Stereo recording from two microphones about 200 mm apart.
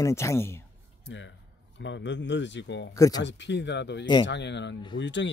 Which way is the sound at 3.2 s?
60° left (ahead or behind).